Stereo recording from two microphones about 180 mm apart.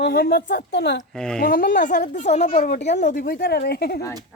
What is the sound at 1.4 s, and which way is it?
Speech, 55° left (ahead or behind).